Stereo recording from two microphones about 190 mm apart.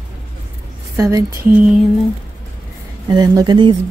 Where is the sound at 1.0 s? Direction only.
15° right (ahead or behind).